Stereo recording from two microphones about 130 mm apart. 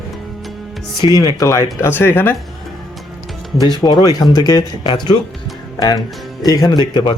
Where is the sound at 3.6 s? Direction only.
35° left (ahead or behind).